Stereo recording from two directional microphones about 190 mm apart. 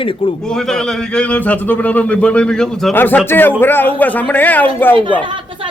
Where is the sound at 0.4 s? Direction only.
5° left (ahead or behind).